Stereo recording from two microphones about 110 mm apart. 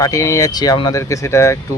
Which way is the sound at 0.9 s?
25° left (ahead or behind).